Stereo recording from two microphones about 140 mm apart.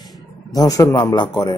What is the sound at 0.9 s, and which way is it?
Speech, 35° left (ahead or behind).